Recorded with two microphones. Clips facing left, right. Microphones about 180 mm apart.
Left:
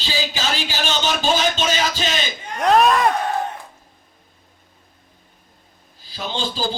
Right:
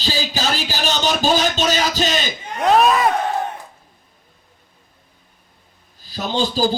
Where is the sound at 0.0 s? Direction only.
40° right (ahead or behind).